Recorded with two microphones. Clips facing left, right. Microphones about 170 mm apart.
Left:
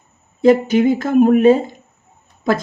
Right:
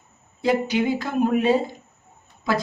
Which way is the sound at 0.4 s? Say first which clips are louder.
Left 9 dB; 50° left (ahead or behind).